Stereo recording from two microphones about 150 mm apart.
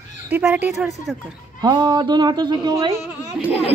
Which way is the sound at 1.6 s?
30° right (ahead or behind).